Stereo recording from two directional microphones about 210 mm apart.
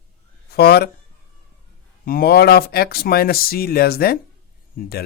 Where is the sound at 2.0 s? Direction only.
45° left (ahead or behind).